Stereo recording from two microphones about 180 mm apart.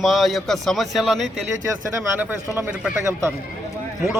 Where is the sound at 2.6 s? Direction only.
10° right (ahead or behind).